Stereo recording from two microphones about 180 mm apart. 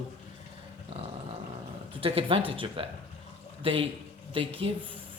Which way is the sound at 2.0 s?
30° right (ahead or behind).